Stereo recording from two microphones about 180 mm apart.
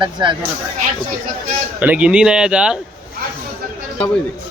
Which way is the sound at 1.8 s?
10° right (ahead or behind).